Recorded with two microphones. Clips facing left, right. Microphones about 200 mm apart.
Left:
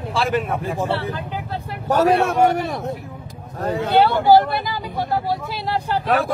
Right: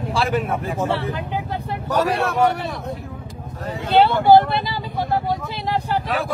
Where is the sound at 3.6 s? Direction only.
50° left (ahead or behind).